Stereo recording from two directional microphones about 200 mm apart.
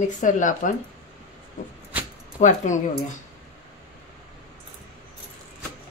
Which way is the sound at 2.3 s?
40° left (ahead or behind).